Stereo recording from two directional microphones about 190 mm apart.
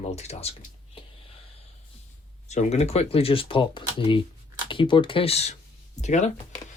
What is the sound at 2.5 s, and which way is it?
Speech, 35° left (ahead or behind).